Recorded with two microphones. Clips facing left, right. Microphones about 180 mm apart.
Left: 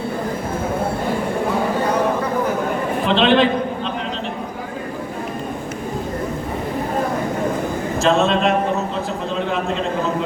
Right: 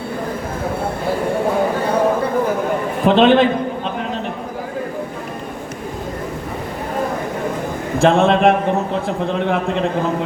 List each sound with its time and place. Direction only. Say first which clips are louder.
3.1 s a man's voice: right 4 dB; 50° right (ahead or behind)
7.9 s a man's voice: right 4 dB; 55° right (ahead or behind)